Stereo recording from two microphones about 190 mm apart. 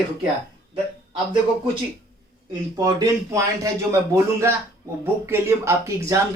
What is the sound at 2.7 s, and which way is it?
Speech, 20° right (ahead or behind).